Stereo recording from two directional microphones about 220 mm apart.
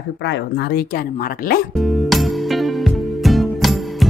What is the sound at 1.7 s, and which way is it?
Music, centre (ahead or behind).